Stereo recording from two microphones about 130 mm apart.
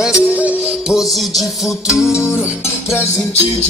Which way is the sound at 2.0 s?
20° left (ahead or behind).